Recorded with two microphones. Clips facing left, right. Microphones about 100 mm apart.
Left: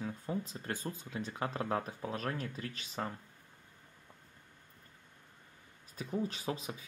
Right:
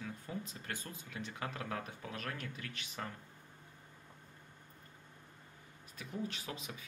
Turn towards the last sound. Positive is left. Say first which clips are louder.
# left 6 dB
turn(degrees=30)  # may be behind; listen again after turning